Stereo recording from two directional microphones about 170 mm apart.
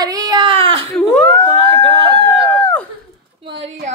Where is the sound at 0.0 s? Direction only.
20° right (ahead or behind).